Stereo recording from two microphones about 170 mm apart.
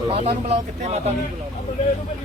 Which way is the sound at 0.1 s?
40° right (ahead or behind).